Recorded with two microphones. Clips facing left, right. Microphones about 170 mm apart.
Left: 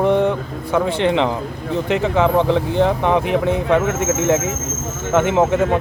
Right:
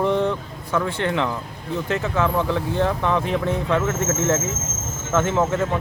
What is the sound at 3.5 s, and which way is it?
Speech, 70° left (ahead or behind).